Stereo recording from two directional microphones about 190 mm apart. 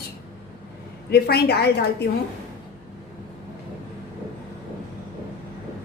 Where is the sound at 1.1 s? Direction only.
55° left (ahead or behind).